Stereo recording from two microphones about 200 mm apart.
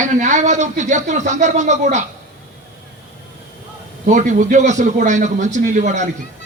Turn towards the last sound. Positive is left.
turn(degrees=-35)  # may be behind; listen again after turning